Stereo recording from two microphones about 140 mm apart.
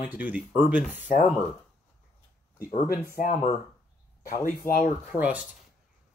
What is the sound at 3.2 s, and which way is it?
Speech, 55° left (ahead or behind).